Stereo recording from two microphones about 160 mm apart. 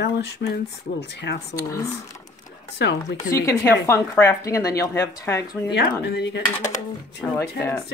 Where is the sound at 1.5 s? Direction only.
20° left (ahead or behind).